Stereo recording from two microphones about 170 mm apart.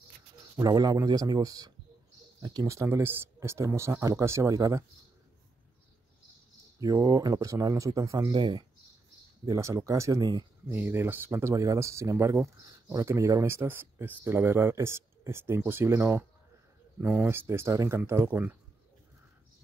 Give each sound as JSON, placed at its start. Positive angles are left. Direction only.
{"t": 0.6, "sound": "speech", "side_deg": -20}
{"t": 6.8, "sound": "speech", "side_deg": -20}